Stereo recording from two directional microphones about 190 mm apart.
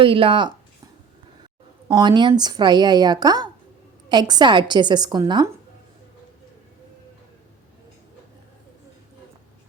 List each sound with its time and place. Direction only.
0.0 s a woman's voice: 30° right (ahead or behind)
1.9 s a woman's voice: 25° right (ahead or behind)